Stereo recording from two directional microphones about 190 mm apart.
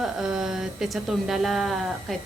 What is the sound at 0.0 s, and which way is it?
Speech, 5° right (ahead or behind).